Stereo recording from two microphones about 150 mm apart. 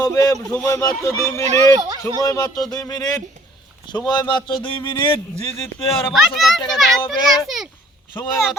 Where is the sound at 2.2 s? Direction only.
20° left (ahead or behind).